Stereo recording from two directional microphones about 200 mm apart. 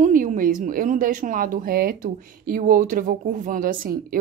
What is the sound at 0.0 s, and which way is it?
Speech, 40° right (ahead or behind).